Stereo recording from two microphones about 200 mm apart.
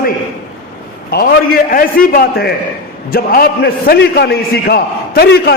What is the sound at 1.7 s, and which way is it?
A man's voice, 45° left (ahead or behind).